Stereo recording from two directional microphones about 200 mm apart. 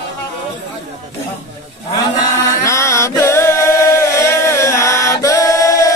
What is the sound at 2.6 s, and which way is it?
Chant, 15° left (ahead or behind).